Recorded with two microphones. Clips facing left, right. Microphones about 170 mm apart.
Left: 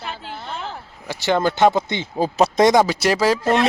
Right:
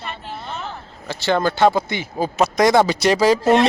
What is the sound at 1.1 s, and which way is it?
Speech, 15° left (ahead or behind).